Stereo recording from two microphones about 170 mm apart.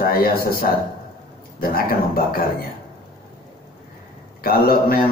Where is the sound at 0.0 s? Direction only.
60° left (ahead or behind).